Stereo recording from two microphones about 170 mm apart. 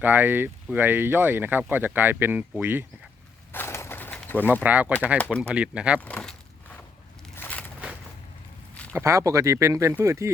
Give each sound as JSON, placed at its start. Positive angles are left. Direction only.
{"t": 0.0, "sound": "speech", "side_deg": -10}
{"t": 3.5, "sound": "bird", "side_deg": 15}
{"t": 4.5, "sound": "speech", "side_deg": -10}
{"t": 5.1, "sound": "speech", "side_deg": 10}
{"t": 5.4, "sound": "speech", "side_deg": -5}
{"t": 6.0, "sound": "speech", "side_deg": 5}
{"t": 7.3, "sound": "a sound", "side_deg": 10}
{"t": 8.7, "sound": "a sound", "side_deg": 10}
{"t": 9.0, "sound": "speech", "side_deg": -15}